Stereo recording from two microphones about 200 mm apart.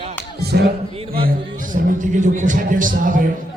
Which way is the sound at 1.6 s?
40° right (ahead or behind).